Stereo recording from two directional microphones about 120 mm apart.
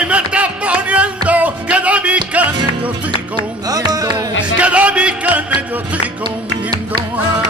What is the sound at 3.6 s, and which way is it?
Music, 30° right (ahead or behind).